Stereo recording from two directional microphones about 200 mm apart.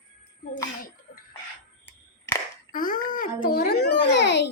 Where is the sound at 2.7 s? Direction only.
45° left (ahead or behind); by 4.5 s 60° left (ahead or behind).